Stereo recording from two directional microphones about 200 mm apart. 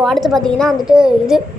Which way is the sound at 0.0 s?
Centre (ahead or behind).